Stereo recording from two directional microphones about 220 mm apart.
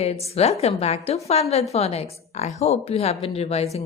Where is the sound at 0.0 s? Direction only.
30° left (ahead or behind).